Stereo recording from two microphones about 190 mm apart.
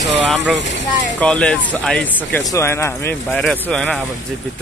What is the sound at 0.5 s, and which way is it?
Speech, 70° left (ahead or behind).